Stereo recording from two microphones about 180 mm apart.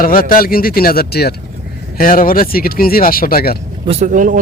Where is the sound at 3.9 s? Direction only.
45° right (ahead or behind).